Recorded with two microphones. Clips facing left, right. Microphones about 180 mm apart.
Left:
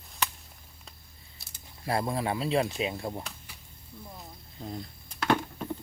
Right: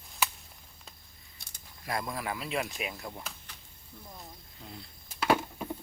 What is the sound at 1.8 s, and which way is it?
Speech, 30° left (ahead or behind).